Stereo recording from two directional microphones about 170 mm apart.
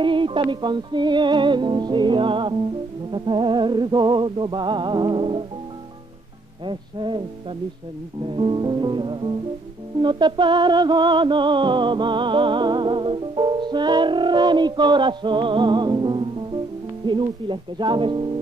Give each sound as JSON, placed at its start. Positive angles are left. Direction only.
{"t": 0.0, "sound": "music", "side_deg": -30}
{"t": 6.6, "sound": "music", "side_deg": -30}